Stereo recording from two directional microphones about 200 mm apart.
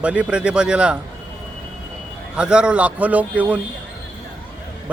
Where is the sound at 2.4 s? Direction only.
5° right (ahead or behind).